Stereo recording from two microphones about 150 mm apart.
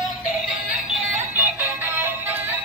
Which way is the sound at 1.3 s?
15° right (ahead or behind).